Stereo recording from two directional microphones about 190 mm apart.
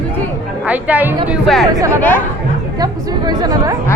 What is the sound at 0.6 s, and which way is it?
A woman's voice, 10° right (ahead or behind).